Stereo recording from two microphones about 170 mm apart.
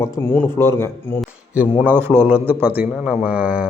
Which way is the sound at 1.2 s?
10° right (ahead or behind).